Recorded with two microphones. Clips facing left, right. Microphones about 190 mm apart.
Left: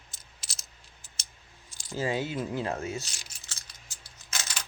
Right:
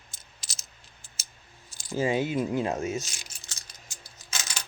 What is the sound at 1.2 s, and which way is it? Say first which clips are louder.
Scissors: even; 5° right (ahead or behind).